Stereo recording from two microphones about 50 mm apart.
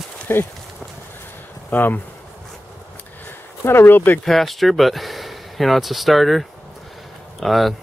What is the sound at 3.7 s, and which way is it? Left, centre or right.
Speech, left.